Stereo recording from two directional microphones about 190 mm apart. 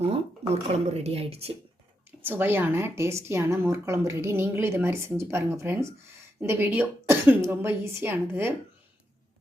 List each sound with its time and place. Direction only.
0.0 s speech: 35° right (ahead or behind)
2.2 s a woman's voice: 10° right (ahead or behind)